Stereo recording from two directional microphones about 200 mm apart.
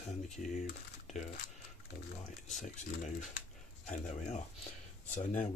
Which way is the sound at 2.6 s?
40° left (ahead or behind).